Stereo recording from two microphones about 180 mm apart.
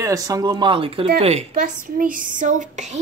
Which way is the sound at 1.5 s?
50° right (ahead or behind).